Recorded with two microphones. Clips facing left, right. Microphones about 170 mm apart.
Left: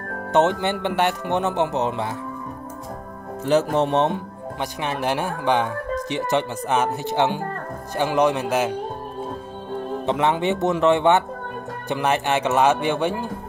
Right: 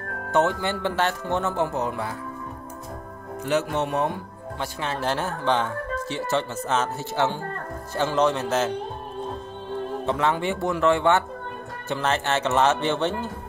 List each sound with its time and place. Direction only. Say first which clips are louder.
0.3 s speech: left 3 dB; 20° left (ahead or behind)
3.4 s speech: left 5 dB; 35° left (ahead or behind); by 8.7 s 15° left (ahead or behind)
10.0 s speech: left 4 dB; 20° left (ahead or behind)